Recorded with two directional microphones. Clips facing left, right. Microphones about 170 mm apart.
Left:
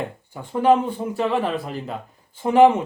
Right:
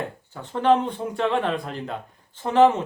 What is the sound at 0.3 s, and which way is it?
Speech, 10° left (ahead or behind).